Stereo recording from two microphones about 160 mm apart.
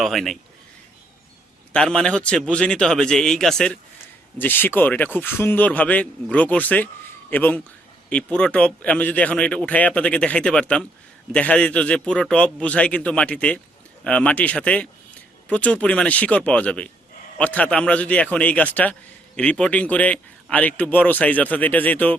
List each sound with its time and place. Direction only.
0.0 s a man's voice: centre (ahead or behind)
1.7 s a man's voice: 5° left (ahead or behind)